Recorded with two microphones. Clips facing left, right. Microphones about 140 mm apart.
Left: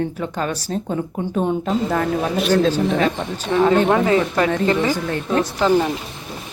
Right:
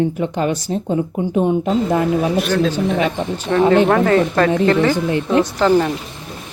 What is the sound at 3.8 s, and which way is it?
Speech, 15° left (ahead or behind).